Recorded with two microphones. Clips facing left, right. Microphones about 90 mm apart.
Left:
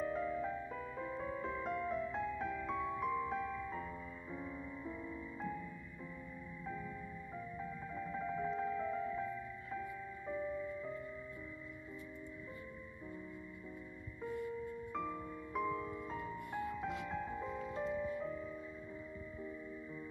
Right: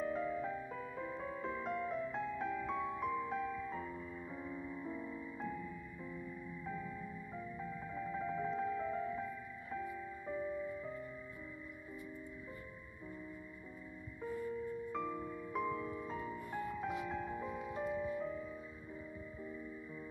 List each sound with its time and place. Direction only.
0.0 s music: centre (ahead or behind)
7.3 s music: centre (ahead or behind)
10.2 s music: 5° right (ahead or behind)
14.9 s music: centre (ahead or behind)
15.9 s music: 15° right (ahead or behind)